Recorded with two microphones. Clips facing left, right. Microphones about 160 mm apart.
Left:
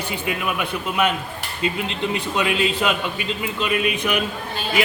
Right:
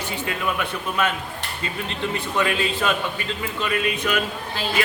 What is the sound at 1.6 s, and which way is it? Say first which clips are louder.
A man's voice: left 5 dB; 15° left (ahead or behind).